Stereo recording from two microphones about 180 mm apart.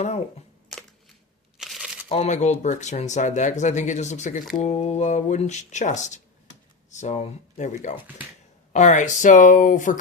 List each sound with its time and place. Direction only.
0.7 s a sound: centre (ahead or behind)
1.5 s crumpling: centre (ahead or behind)
2.0 s speech: 40° left (ahead or behind)